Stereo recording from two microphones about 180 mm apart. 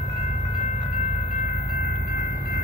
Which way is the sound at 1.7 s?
50° left (ahead or behind).